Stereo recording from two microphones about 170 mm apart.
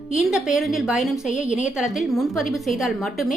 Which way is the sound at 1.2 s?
45° left (ahead or behind).